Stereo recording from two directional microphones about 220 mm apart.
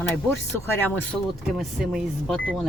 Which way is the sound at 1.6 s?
Centre (ahead or behind).